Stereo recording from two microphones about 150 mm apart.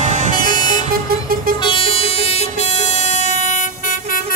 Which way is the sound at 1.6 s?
35° left (ahead or behind).